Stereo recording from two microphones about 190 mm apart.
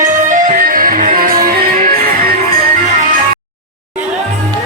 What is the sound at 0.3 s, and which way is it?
Music, 40° right (ahead or behind).